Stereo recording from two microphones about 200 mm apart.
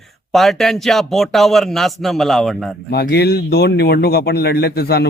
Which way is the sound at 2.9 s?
55° left (ahead or behind).